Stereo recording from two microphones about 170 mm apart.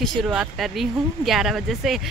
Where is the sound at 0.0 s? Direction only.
Centre (ahead or behind).